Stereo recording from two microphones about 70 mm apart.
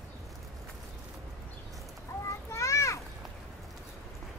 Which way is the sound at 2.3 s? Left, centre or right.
Left.